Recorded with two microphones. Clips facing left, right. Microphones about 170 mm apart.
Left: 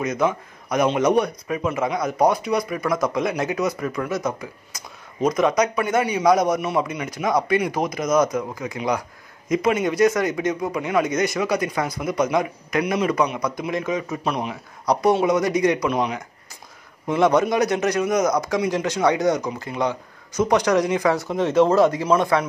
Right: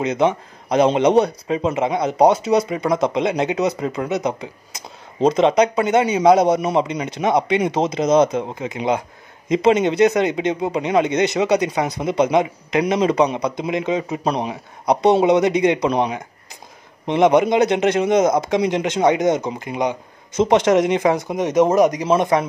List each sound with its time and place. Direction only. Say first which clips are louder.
0.0 s speech: right 4 dB; 25° right (ahead or behind)
14.2 s a man's voice: right 4 dB; 35° right (ahead or behind)
14.5 s speech: right 3 dB; 25° right (ahead or behind)
17.0 s speech: right 3 dB; 20° right (ahead or behind)